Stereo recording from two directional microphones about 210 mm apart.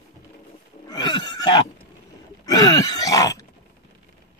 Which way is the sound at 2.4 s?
15° left (ahead or behind).